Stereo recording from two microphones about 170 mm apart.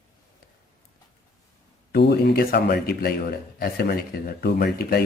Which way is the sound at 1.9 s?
70° left (ahead or behind).